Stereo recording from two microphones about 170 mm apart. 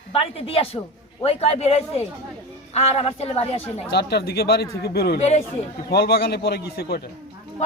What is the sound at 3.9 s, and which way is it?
Speech, 75° left (ahead or behind).